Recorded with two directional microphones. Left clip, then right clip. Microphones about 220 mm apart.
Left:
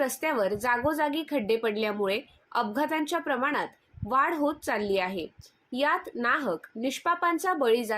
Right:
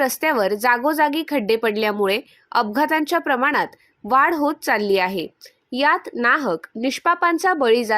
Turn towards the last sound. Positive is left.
turn(degrees=-45)  # may be behind; listen again after turning